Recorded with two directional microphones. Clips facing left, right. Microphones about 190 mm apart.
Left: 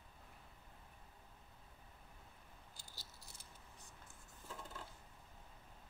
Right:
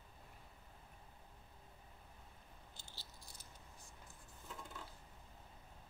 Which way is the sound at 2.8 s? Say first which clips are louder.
Right 1 dB; 40° left (ahead or behind).